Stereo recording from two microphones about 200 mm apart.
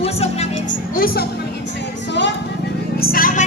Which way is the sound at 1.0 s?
50° left (ahead or behind).